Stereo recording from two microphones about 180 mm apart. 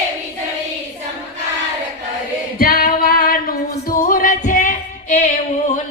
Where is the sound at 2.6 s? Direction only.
55° left (ahead or behind).